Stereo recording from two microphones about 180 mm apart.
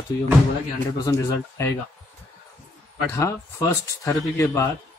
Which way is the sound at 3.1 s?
15° left (ahead or behind).